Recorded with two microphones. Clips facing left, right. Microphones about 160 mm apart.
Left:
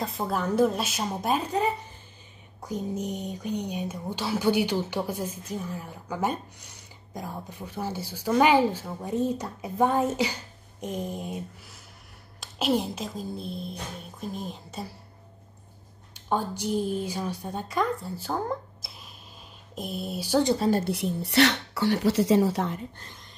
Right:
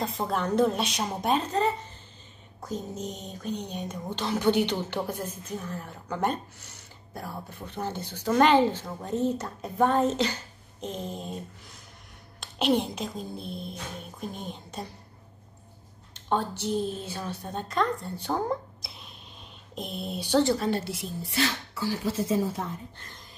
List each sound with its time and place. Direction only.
0.0 s a woman's voice: centre (ahead or behind)
16.1 s a woman's voice: 10° left (ahead or behind)
20.4 s a woman's voice: 30° left (ahead or behind)
20.7 s speech: 55° left (ahead or behind); by 22.8 s 75° left (ahead or behind)